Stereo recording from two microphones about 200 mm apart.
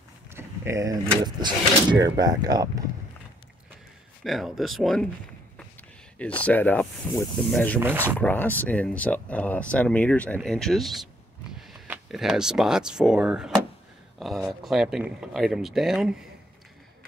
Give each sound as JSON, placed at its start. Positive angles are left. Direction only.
{"t": 0.3, "sound": "speech", "side_deg": -15}
{"t": 4.2, "sound": "speech", "side_deg": 0}
{"t": 6.1, "sound": "speech", "side_deg": 5}
{"t": 7.8, "sound": "speech", "side_deg": -10}
{"t": 8.2, "sound": "speech", "side_deg": 10}